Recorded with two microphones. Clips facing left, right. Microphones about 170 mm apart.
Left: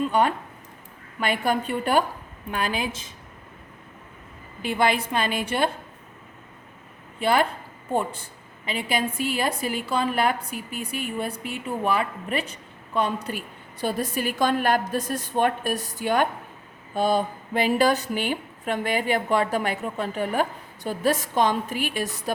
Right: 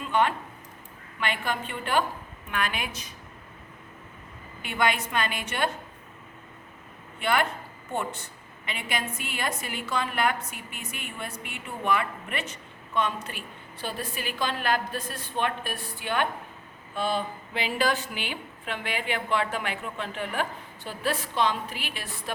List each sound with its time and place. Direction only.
0.1 s a woman's voice: 40° left (ahead or behind)
4.6 s a woman's voice: 30° left (ahead or behind)
7.2 s a woman's voice: 35° left (ahead or behind)